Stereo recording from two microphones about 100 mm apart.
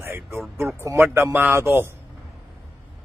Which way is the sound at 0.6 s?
25° right (ahead or behind).